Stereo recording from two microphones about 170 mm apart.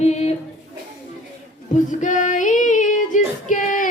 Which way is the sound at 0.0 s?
40° left (ahead or behind).